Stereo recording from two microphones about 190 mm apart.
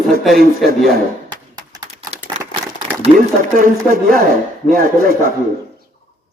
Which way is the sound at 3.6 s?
50° right (ahead or behind).